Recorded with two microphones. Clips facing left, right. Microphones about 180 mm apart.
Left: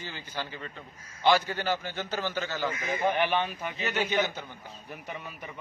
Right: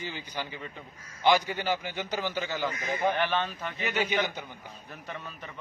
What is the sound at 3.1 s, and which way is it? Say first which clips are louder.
Speech: left 1 dB; 15° left (ahead or behind).